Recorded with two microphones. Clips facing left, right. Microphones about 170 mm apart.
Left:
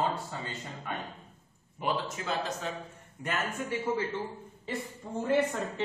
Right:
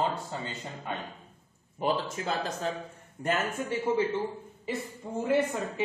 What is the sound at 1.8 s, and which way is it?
Speech, 35° right (ahead or behind).